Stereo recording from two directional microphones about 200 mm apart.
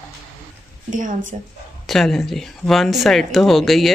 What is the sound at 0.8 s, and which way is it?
Speech, 40° right (ahead or behind).